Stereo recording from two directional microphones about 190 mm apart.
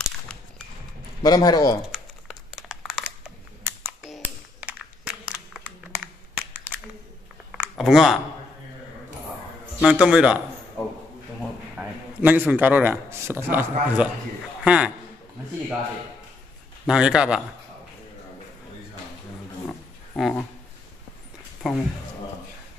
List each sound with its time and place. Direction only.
1.2 s speech: 20° left (ahead or behind)
1.9 s crumpling: centre (ahead or behind)
3.6 s a sound: 5° right (ahead or behind)
9.8 s a man's voice: 5° right (ahead or behind)
10.8 s a sound: 15° left (ahead or behind)
11.7 s a man's voice: 5° right (ahead or behind)
16.8 s a man's voice: 5° right (ahead or behind)
20.2 s a man's voice: centre (ahead or behind)
21.6 s a man's voice: centre (ahead or behind)